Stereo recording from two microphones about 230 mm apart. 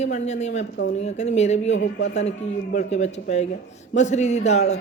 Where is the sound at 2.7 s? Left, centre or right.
Left.